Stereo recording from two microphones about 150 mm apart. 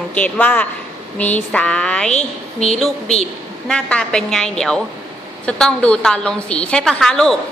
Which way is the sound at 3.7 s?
5° left (ahead or behind).